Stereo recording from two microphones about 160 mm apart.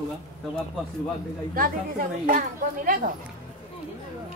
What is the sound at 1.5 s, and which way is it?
Speech, 65° right (ahead or behind).